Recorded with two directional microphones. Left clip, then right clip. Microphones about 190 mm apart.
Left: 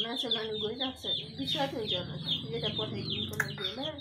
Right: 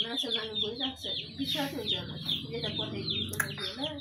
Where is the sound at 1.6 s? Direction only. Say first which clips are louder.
Even; 15° left (ahead or behind).